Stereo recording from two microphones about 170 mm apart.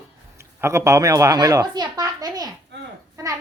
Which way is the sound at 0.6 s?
15° right (ahead or behind).